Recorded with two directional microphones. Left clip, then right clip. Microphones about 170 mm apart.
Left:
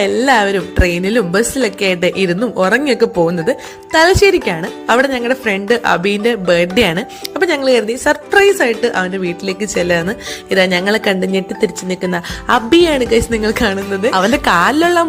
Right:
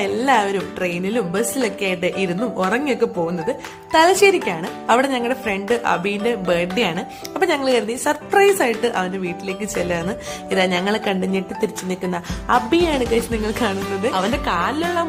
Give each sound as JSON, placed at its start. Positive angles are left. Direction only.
{"t": 0.0, "sound": "speech", "side_deg": 30}
{"t": 3.9, "sound": "speech", "side_deg": 20}
{"t": 7.3, "sound": "speech", "side_deg": 20}